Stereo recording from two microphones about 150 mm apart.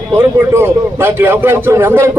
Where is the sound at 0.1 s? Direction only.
15° right (ahead or behind).